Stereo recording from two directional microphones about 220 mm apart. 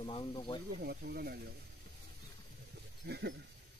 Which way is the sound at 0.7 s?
45° right (ahead or behind).